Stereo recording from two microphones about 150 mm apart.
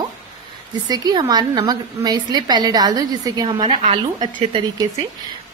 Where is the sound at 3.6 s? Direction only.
55° right (ahead or behind).